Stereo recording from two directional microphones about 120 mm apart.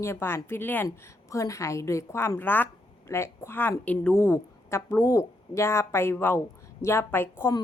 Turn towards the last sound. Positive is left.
turn(degrees=20)  # may be behind; listen again after turning